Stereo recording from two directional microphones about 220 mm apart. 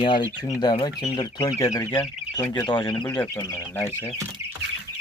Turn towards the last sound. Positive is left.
turn(degrees=10)  # may be behind; listen again after turning